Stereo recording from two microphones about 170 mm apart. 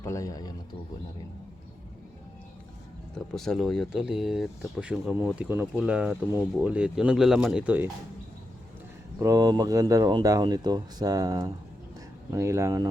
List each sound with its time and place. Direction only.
0.0 s a man's voice: 20° left (ahead or behind)
3.3 s speech: centre (ahead or behind)
9.1 s speech: 20° right (ahead or behind)